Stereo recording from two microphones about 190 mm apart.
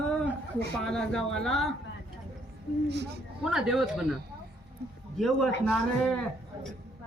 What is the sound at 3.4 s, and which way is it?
Speech, 5° right (ahead or behind).